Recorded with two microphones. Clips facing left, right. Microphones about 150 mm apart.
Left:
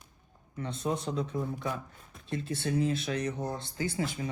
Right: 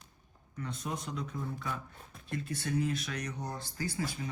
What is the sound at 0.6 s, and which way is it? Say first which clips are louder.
Speech: left 6 dB; 30° left (ahead or behind).